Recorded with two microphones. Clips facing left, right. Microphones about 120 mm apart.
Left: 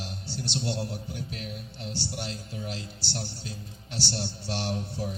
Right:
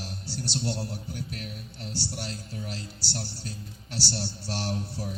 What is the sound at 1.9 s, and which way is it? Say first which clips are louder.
A man's voice: even; 40° right (ahead or behind).